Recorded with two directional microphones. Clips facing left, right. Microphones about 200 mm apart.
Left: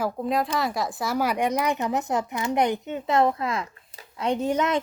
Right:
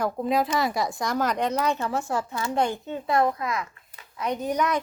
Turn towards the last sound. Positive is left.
turn(degrees=25)  # may be behind; listen again after turning